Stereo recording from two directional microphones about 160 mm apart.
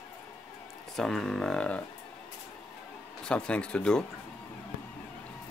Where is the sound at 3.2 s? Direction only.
5° left (ahead or behind).